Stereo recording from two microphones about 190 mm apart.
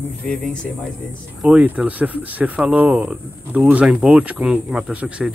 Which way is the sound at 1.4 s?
5° right (ahead or behind).